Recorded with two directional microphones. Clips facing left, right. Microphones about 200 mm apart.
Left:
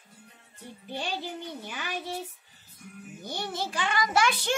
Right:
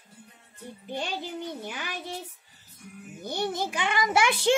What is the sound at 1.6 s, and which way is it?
Speech, 10° right (ahead or behind).